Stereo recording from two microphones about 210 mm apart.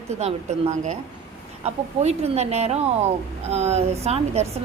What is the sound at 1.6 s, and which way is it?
Speech, 30° right (ahead or behind).